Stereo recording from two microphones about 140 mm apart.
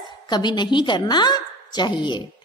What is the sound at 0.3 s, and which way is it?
A woman's voice, 30° left (ahead or behind).